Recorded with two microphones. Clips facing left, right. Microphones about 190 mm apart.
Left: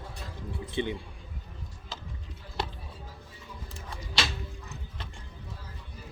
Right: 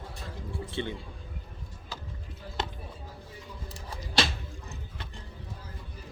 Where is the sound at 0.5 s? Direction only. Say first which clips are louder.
Left 3 dB; 15° left (ahead or behind).